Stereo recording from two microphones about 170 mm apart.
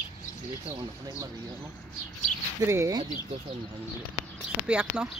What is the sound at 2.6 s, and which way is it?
Speech, 15° right (ahead or behind).